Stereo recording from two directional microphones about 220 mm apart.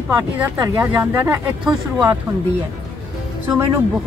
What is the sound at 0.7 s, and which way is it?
Speech, 10° right (ahead or behind).